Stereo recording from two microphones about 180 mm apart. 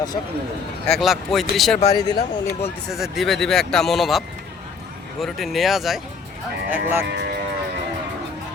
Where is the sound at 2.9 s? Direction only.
Centre (ahead or behind).